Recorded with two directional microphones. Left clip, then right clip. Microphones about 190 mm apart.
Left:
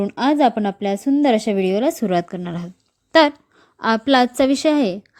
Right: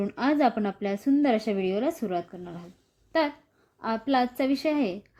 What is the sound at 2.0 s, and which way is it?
A woman's voice, 45° left (ahead or behind).